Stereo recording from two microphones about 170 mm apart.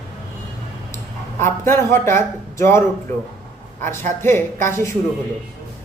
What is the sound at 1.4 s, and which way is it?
Speech, 15° left (ahead or behind).